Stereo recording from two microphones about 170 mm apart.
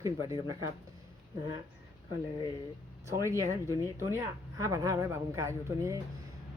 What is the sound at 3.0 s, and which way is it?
Speech, 15° right (ahead or behind).